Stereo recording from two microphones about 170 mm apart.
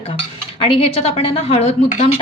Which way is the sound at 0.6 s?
35° left (ahead or behind).